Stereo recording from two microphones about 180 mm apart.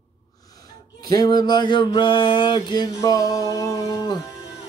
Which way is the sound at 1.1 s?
25° left (ahead or behind).